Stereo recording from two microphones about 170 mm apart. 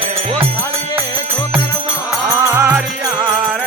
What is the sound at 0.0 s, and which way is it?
Music, 35° right (ahead or behind).